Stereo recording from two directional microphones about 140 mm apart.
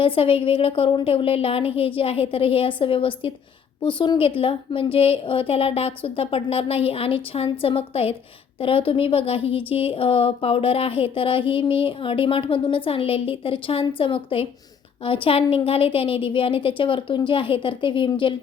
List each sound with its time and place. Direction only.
0.0 s a woman's voice: 40° left (ahead or behind)